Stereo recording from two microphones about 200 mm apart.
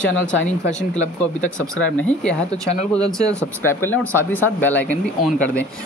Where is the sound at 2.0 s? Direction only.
5° left (ahead or behind).